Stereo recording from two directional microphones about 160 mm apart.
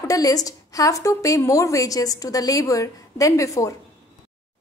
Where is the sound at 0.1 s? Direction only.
20° left (ahead or behind).